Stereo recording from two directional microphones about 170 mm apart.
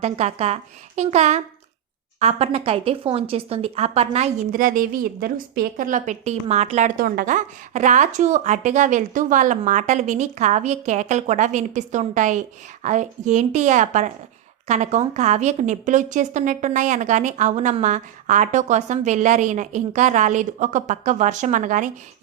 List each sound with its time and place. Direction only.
0.0 s speech: 40° right (ahead or behind)
4.5 s a woman's voice: 55° right (ahead or behind)